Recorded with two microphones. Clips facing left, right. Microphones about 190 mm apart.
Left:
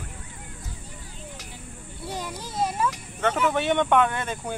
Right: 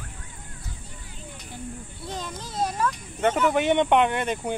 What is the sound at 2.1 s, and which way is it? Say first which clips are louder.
Speech: left 1 dB; 10° left (ahead or behind).